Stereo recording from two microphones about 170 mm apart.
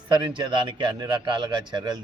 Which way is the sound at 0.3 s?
25° right (ahead or behind).